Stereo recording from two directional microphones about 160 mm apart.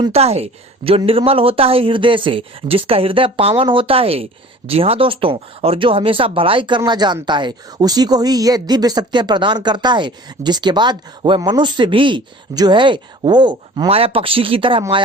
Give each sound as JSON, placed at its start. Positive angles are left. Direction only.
{"t": 0.1, "sound": "a woman's voice", "side_deg": -40}